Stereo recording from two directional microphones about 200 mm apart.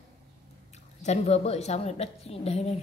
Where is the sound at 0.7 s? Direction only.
35° left (ahead or behind).